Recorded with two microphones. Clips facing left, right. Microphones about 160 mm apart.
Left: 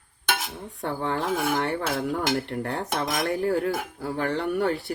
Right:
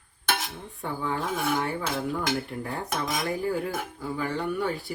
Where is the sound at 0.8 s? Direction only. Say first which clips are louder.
Left 3 dB; 70° left (ahead or behind).